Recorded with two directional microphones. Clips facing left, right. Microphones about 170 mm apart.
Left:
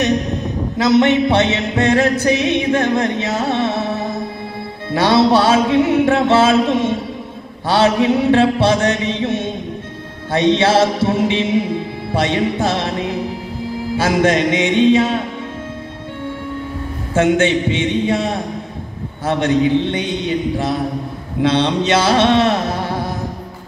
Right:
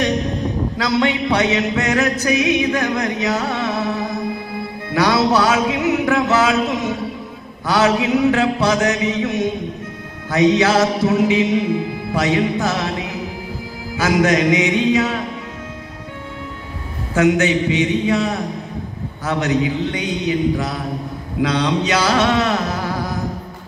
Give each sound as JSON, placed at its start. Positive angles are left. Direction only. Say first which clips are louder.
{"t": 0.7, "sound": "music", "louder": "left 7 dB", "side_deg": 25}
{"t": 13.9, "sound": "music", "louder": "left 1 dB", "side_deg": 30}
{"t": 17.1, "sound": "music", "louder": "left 1 dB", "side_deg": 25}
{"t": 21.4, "sound": "mantra", "louder": "left 3 dB", "side_deg": 25}